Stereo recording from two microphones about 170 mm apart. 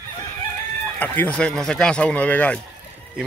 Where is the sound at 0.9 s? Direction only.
10° left (ahead or behind).